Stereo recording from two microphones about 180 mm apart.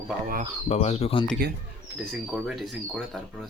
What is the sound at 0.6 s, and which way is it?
Speech, 35° left (ahead or behind).